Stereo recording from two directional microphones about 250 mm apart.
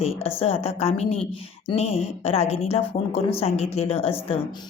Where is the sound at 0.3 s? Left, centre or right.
Left.